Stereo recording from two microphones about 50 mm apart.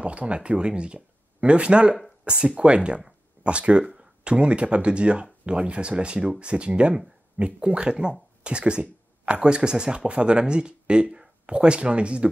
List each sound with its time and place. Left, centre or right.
0.0 s speech: right
3.8 s a sound: centre
4.2 s speech: right